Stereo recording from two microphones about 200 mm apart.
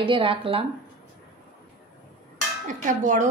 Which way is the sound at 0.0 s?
25° right (ahead or behind).